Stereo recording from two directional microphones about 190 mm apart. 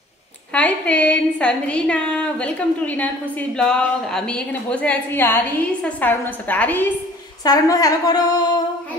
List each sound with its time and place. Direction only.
0.5 s a woman's voice: 5° left (ahead or behind)
7.4 s a woman's voice: 20° left (ahead or behind)